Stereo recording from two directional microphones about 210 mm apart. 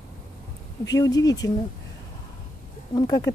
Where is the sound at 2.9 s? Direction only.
15° left (ahead or behind).